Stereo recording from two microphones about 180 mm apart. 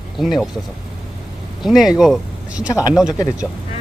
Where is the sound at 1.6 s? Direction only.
Centre (ahead or behind).